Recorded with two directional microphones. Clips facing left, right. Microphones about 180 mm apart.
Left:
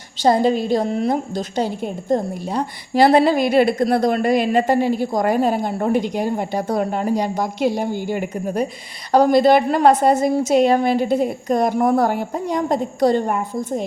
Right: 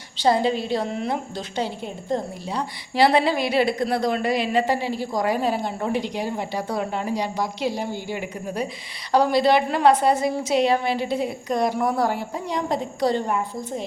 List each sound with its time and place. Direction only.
0.2 s a woman's voice: 45° left (ahead or behind)